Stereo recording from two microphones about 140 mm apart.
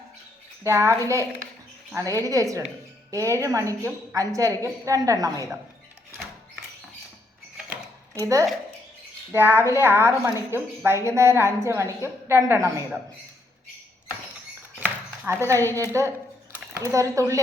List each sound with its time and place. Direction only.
0.6 s speech: 20° right (ahead or behind)
8.2 s speech: 25° right (ahead or behind)
14.8 s a sound: 15° right (ahead or behind)
15.8 s speech: 20° right (ahead or behind)